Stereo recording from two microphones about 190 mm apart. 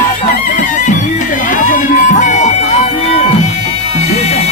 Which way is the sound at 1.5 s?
45° left (ahead or behind).